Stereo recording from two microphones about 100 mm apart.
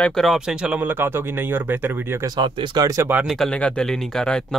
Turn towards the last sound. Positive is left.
turn(degrees=5)  # may be behind; listen again after turning